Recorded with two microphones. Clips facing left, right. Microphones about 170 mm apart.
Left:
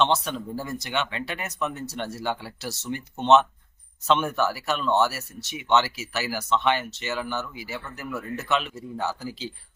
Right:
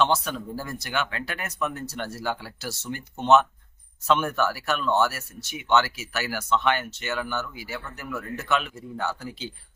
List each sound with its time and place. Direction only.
0.0 s speech: centre (ahead or behind)